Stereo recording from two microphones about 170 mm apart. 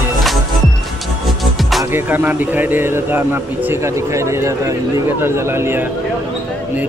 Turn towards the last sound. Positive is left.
turn(degrees=-15)  # may be behind; listen again after turning